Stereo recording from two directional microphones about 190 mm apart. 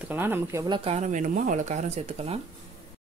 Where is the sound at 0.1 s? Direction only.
10° right (ahead or behind); by 2.4 s 30° right (ahead or behind).